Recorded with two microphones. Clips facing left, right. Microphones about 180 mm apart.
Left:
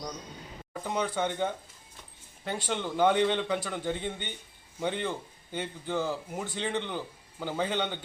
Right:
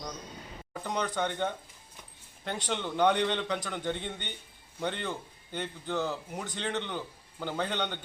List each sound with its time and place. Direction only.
0.7 s a man's voice: 5° left (ahead or behind)